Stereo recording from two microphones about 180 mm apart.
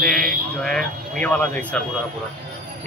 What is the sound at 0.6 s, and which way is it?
Speech, 5° left (ahead or behind).